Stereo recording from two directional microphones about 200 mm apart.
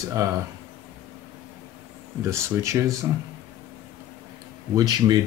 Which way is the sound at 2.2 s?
15° right (ahead or behind).